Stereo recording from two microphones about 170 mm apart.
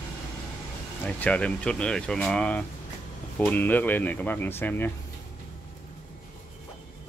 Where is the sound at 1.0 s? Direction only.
10° left (ahead or behind).